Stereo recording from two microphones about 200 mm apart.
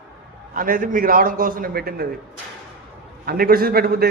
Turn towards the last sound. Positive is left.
turn(degrees=-50)  # may be behind; listen again after turning